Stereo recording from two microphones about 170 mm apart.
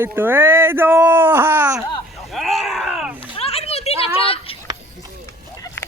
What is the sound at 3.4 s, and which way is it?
Splash, 35° left (ahead or behind).